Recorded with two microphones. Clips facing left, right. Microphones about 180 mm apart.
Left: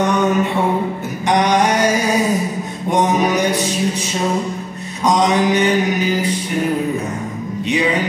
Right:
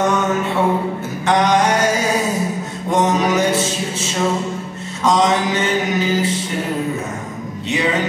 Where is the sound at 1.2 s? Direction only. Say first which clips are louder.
Even; 15° left (ahead or behind).